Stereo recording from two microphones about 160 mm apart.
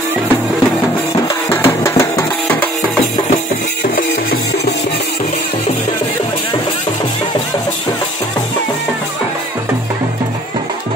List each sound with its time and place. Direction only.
1.1 s music: 20° left (ahead or behind)